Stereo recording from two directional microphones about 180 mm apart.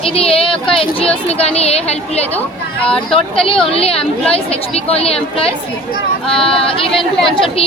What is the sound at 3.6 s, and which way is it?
A woman's voice, 30° left (ahead or behind).